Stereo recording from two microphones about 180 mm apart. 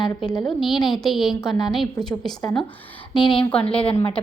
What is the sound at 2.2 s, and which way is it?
A woman's voice, 20° left (ahead or behind).